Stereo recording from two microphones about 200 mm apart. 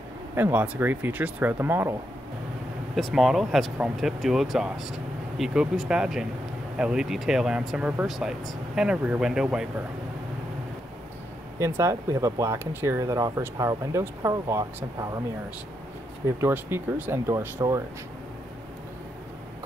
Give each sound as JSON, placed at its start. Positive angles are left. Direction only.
{"t": 0.4, "sound": "speech", "side_deg": -10}
{"t": 3.0, "sound": "speech", "side_deg": 0}
{"t": 11.5, "sound": "speech", "side_deg": -15}
{"t": 16.3, "sound": "speech", "side_deg": -10}